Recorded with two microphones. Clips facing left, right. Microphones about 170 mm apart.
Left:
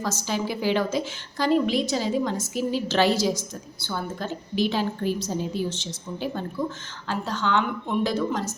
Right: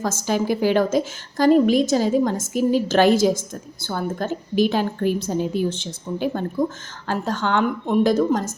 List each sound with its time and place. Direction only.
0.0 s a woman's voice: 50° right (ahead or behind)